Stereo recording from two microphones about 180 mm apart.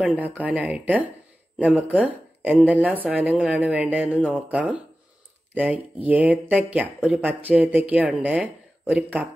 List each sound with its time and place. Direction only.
0.0 s speech: 10° right (ahead or behind)